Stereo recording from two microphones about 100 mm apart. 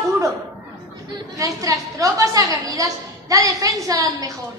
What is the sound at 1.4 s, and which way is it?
A child's voice, 35° right (ahead or behind).